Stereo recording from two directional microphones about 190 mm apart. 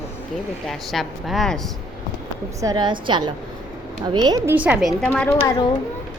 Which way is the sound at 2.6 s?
25° right (ahead or behind).